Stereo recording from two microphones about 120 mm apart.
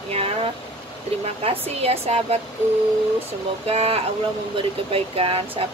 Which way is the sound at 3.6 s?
55° right (ahead or behind).